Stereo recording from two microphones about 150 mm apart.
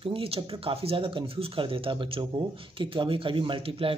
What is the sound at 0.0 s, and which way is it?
Speech, 40° right (ahead or behind).